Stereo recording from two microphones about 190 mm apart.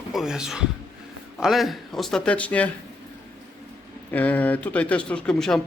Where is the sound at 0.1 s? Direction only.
Centre (ahead or behind).